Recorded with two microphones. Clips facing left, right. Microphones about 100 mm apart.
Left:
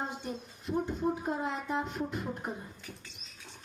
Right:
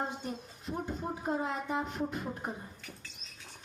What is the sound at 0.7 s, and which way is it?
Speech, 15° right (ahead or behind).